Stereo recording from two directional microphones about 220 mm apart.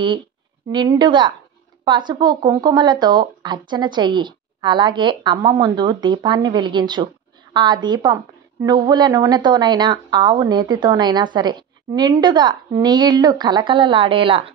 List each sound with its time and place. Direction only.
0.7 s a woman's voice: 20° right (ahead or behind)